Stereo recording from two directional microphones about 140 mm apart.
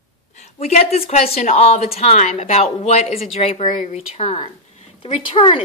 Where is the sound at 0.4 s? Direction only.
50° left (ahead or behind).